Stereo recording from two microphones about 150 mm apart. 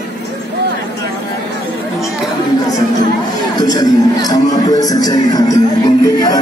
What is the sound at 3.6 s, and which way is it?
Speech, 25° left (ahead or behind).